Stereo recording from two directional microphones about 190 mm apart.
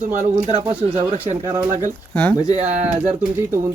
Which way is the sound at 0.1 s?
40° right (ahead or behind).